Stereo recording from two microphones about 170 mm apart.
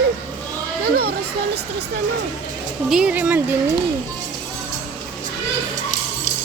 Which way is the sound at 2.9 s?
5° right (ahead or behind).